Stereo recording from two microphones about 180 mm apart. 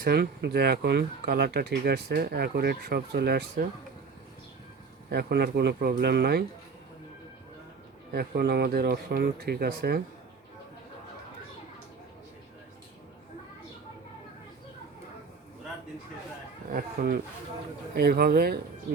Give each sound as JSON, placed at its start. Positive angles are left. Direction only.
{"t": 0.0, "sound": "speech", "side_deg": -60}
{"t": 5.0, "sound": "speech", "side_deg": -65}
{"t": 8.1, "sound": "speech", "side_deg": -60}
{"t": 16.6, "sound": "speech", "side_deg": -55}